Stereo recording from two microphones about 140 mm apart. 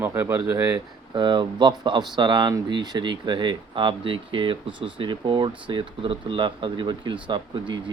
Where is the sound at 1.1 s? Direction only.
35° right (ahead or behind).